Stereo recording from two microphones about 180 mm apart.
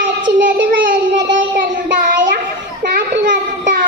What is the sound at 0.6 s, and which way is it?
Child singing, 85° right.